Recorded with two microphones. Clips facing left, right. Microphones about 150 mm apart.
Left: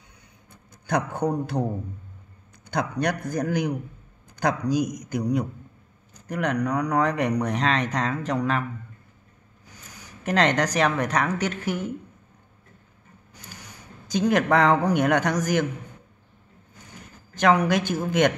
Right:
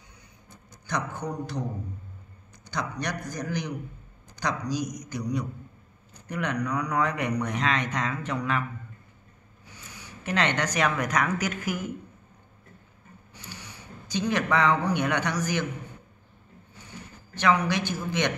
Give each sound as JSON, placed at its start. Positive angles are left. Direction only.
{"t": 0.8, "sound": "a man's voice", "side_deg": 55}
{"t": 2.7, "sound": "a man's voice", "side_deg": 55}
{"t": 9.7, "sound": "speech", "side_deg": 45}
{"t": 13.5, "sound": "speech", "side_deg": 45}
{"t": 16.7, "sound": "a sound", "side_deg": 45}